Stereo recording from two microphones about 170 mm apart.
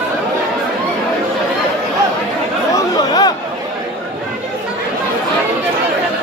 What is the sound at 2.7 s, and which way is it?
Chatter, 20° left (ahead or behind).